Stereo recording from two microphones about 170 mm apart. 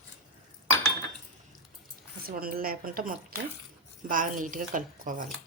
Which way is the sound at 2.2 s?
60° right (ahead or behind).